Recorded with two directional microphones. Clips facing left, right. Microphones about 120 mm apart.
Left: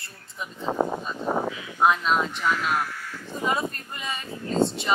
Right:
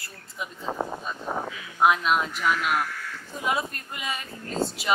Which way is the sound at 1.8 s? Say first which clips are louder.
Even; 5° right (ahead or behind).